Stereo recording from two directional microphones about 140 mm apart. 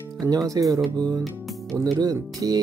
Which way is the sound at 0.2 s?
25° right (ahead or behind).